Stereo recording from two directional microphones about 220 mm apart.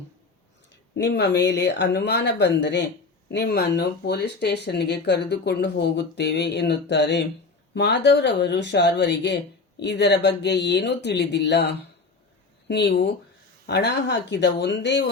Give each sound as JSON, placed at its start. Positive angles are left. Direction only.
{"t": 0.9, "sound": "speech", "side_deg": 50}